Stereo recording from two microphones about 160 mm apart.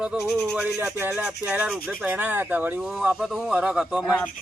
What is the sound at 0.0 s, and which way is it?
Speech, 5° right (ahead or behind).